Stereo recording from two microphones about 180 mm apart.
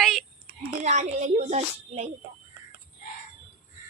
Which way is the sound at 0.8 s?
40° right (ahead or behind).